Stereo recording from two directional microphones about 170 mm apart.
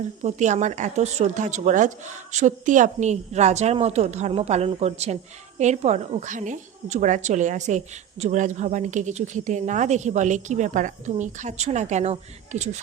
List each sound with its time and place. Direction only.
0.2 s a woman's voice: 45° right (ahead or behind)